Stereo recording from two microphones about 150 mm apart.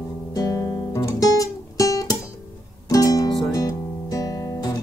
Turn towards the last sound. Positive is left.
turn(degrees=25)  # may be behind; listen again after turning